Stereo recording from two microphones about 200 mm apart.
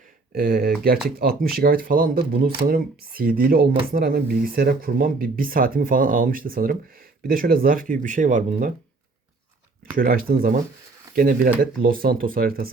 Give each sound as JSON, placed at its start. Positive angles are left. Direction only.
{"t": 0.3, "sound": "speech", "side_deg": -45}
{"t": 10.0, "sound": "speech", "side_deg": -45}